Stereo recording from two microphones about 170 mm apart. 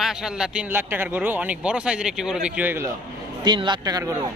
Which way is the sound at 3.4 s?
25° right (ahead or behind).